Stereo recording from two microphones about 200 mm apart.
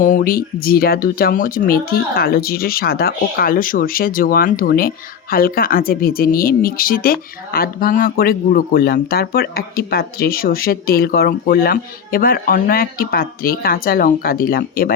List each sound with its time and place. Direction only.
0.0 s speech: 45° left (ahead or behind)